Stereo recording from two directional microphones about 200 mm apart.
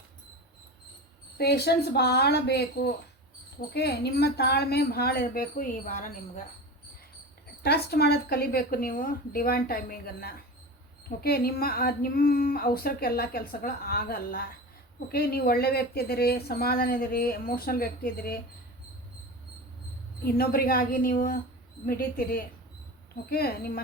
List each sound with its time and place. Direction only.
1.4 s a woman's voice: 55° left (ahead or behind); by 6.4 s 40° left (ahead or behind)
7.6 s speech: 50° left (ahead or behind)
20.2 s speech: 50° left (ahead or behind)